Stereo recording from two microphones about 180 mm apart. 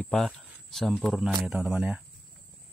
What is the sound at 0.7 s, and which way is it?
Speech, centre (ahead or behind).